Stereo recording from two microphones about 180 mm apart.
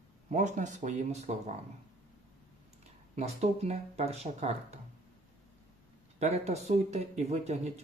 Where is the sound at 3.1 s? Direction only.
35° right (ahead or behind).